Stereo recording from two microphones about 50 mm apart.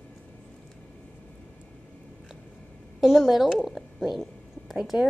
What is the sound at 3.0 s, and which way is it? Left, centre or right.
Speech, centre.